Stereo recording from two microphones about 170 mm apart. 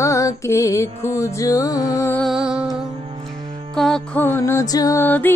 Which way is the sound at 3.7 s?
5° left (ahead or behind).